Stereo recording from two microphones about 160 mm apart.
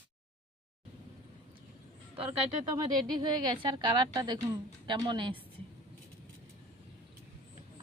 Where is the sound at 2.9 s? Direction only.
25° right (ahead or behind).